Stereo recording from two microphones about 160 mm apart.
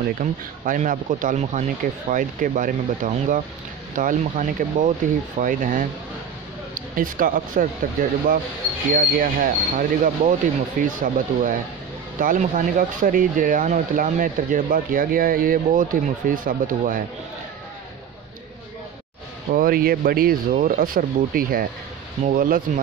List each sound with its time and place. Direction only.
0.2 s speech: 50° right (ahead or behind)
19.5 s speech: 65° right (ahead or behind)